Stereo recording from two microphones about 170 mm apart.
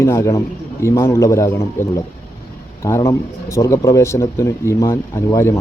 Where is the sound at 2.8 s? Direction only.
15° left (ahead or behind).